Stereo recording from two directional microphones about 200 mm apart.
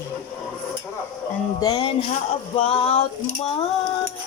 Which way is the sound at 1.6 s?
20° left (ahead or behind).